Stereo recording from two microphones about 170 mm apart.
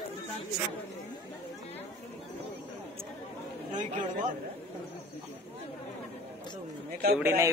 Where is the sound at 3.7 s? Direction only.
45° right (ahead or behind).